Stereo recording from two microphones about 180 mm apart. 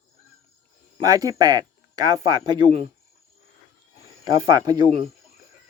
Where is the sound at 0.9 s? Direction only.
20° right (ahead or behind).